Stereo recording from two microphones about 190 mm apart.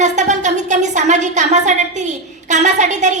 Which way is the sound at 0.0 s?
40° right (ahead or behind).